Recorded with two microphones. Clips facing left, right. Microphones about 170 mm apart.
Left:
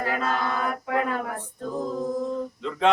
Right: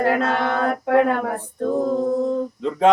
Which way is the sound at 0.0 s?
65° right (ahead or behind).